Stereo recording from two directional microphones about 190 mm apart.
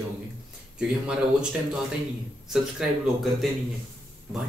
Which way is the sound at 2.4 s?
Centre (ahead or behind).